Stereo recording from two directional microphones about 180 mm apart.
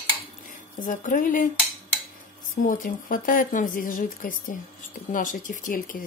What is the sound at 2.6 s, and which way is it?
Speech, 50° left (ahead or behind).